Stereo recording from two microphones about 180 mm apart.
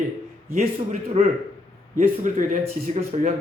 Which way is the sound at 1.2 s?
40° right (ahead or behind).